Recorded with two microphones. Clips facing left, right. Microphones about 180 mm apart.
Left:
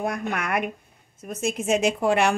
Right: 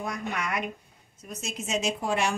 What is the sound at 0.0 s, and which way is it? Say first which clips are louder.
A woman's voice: left 5 dB; 55° left (ahead or behind).